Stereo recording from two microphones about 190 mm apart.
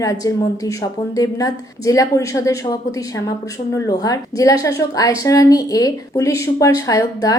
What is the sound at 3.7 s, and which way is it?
A woman's voice, 20° left (ahead or behind).